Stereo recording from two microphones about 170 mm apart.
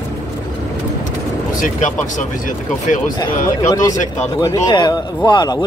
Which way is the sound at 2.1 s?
50° left (ahead or behind).